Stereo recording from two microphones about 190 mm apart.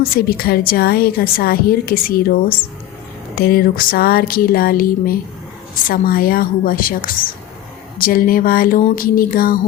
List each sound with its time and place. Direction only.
0.0 s a woman's voice: 50° left (ahead or behind)